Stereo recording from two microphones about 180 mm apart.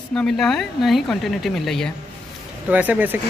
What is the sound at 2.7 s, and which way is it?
Speech, 10° right (ahead or behind).